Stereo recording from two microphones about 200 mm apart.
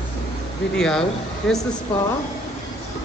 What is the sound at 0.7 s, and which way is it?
Speech, 5° left (ahead or behind).